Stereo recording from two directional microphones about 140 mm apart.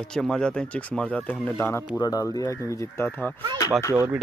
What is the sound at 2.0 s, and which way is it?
Speech, 25° left (ahead or behind).